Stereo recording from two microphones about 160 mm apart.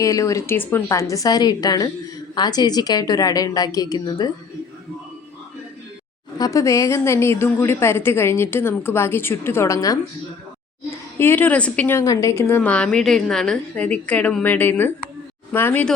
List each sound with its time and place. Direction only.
0.0 s a woman's voice: 20° left (ahead or behind)
6.4 s a woman's voice: 20° left (ahead or behind)
11.2 s a woman's voice: 10° left (ahead or behind)